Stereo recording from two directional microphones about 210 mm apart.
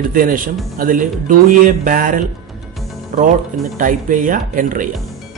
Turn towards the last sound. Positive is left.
turn(degrees=-40)  # may be behind; listen again after turning